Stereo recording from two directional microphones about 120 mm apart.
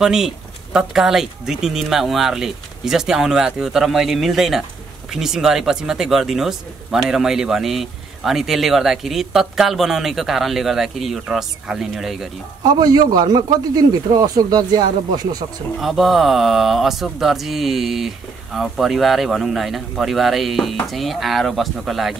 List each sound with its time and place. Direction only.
0.0 s speech: 5° right (ahead or behind)
12.6 s a man's voice: 35° right (ahead or behind)
15.8 s speech: centre (ahead or behind)